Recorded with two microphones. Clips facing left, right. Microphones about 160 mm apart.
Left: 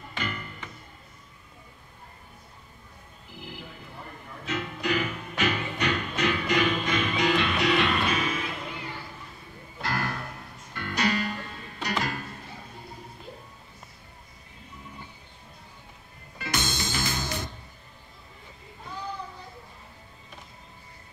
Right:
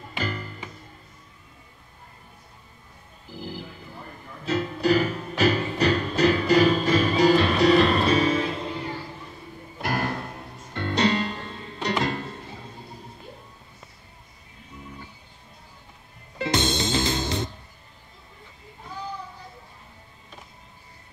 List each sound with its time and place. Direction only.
0.2 s music: 35° right (ahead or behind)
3.3 s music: 35° right (ahead or behind)
9.8 s music: 20° right (ahead or behind)
16.3 s music: 25° right (ahead or behind)